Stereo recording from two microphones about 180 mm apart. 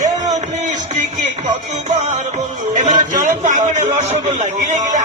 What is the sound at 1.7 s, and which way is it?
Music, 40° right (ahead or behind).